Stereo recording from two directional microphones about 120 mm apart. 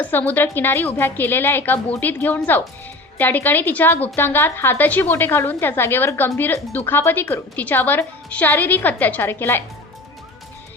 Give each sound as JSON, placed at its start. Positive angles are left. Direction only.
{"t": 0.0, "sound": "a woman's voice", "side_deg": 15}